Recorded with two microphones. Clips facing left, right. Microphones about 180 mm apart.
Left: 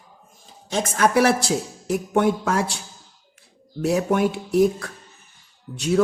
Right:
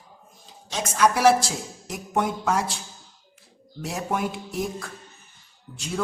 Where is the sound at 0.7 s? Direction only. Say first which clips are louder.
Left 3 dB; 55° left (ahead or behind); by 2.8 s 70° left (ahead or behind).